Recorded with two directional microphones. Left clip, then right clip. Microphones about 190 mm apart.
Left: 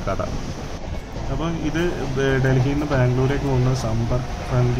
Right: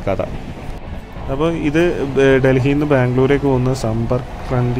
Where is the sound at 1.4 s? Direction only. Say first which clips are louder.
Right 9 dB; 35° right (ahead or behind).